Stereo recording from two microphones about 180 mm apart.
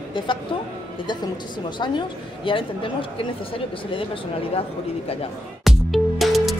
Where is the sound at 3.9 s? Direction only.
30° left (ahead or behind).